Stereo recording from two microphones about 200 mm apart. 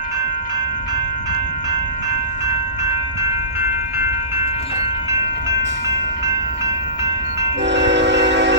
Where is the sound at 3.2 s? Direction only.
10° right (ahead or behind).